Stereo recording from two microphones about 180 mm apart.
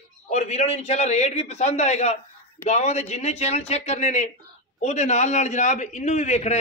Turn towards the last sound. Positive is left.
turn(degrees=40)  # may be behind; listen again after turning